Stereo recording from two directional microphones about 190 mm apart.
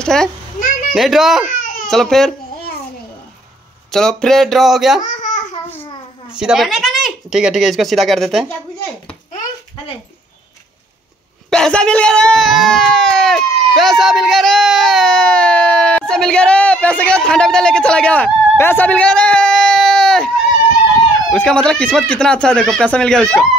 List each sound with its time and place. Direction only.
0.0 s a child's voice: 5° left (ahead or behind)
0.6 s children playing: 45° left (ahead or behind)
0.9 s speech: centre (ahead or behind)
3.9 s speech: 5° left (ahead or behind)
5.0 s babbling: 40° left (ahead or behind)
6.3 s speech: 5° right (ahead or behind)
11.5 s a sound: 5° left (ahead or behind)
21.3 s speech: 5° left (ahead or behind)